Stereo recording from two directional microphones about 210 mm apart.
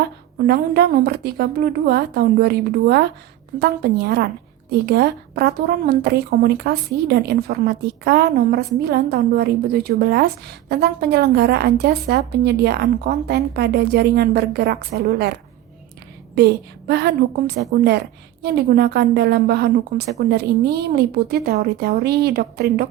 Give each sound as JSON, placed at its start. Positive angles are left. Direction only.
{"t": 0.4, "sound": "a woman's voice", "side_deg": -50}